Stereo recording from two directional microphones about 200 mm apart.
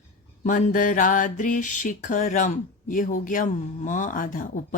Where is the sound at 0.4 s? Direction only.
40° left (ahead or behind).